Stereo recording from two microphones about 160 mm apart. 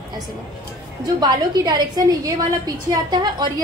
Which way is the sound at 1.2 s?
25° right (ahead or behind).